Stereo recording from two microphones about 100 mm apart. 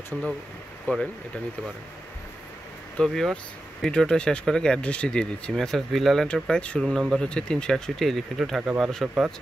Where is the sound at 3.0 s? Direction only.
5° left (ahead or behind).